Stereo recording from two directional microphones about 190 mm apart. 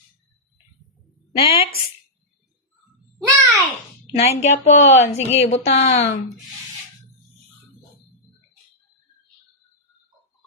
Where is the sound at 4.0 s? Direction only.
35° left (ahead or behind).